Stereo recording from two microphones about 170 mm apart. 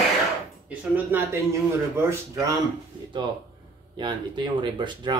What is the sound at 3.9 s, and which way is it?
Speech, 25° right (ahead or behind).